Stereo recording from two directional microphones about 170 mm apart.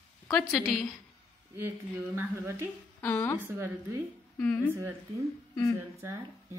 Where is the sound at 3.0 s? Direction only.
10° left (ahead or behind).